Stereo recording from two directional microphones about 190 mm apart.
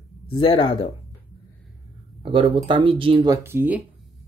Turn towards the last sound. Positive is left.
turn(degrees=-10)  # may be behind; listen again after turning